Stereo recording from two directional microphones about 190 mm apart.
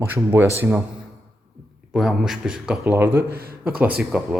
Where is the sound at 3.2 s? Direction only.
55° right (ahead or behind).